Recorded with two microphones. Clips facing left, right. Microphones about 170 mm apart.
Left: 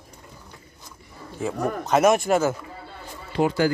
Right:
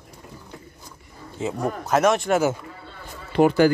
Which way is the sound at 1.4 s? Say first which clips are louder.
Even; 20° right (ahead or behind).